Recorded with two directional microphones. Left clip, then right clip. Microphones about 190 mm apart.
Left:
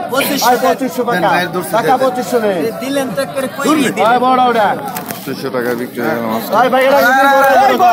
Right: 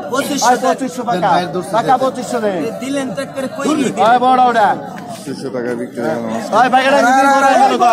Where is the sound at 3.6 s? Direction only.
45° right (ahead or behind).